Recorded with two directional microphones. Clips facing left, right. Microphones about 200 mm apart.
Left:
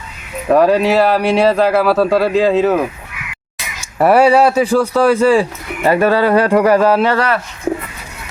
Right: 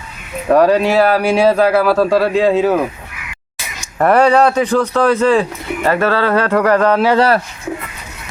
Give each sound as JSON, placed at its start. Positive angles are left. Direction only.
{"t": 0.4, "sound": "speech", "side_deg": 0}
{"t": 3.9, "sound": "speech", "side_deg": 10}
{"t": 7.2, "sound": "speech", "side_deg": -35}